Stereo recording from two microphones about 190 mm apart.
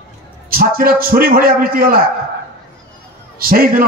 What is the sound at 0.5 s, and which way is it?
A man's voice, 50° right (ahead or behind).